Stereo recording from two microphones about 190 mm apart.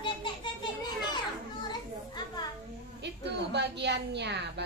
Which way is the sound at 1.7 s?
20° left (ahead or behind).